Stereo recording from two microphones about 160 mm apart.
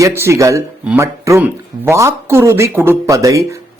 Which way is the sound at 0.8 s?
10° right (ahead or behind).